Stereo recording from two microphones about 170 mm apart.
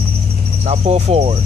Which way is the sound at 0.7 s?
35° right (ahead or behind).